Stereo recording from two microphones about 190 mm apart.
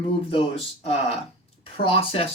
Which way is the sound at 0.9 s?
30° left (ahead or behind).